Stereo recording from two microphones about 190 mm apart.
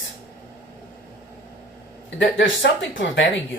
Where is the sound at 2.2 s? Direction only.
75° left (ahead or behind).